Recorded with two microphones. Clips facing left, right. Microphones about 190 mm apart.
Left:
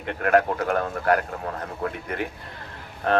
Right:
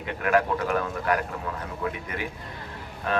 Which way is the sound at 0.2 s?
55° left (ahead or behind).